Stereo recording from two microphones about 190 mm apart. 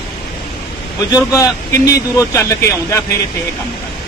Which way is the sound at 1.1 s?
20° left (ahead or behind).